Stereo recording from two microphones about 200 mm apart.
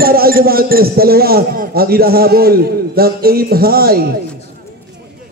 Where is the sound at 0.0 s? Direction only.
50° right (ahead or behind).